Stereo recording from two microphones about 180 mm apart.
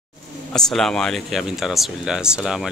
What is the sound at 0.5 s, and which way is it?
Speech, 5° left (ahead or behind).